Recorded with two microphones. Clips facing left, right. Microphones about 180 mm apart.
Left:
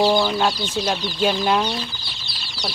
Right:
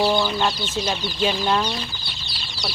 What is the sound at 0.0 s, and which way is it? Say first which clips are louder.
Speech: left 2 dB; 15° left (ahead or behind).